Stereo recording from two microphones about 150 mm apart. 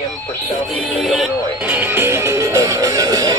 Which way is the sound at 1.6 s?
10° right (ahead or behind).